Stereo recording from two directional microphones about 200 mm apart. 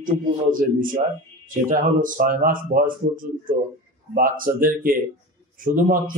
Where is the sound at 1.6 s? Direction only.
40° right (ahead or behind).